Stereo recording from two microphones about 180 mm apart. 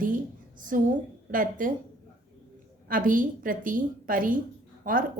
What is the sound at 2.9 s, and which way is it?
A woman's voice, 50° right (ahead or behind).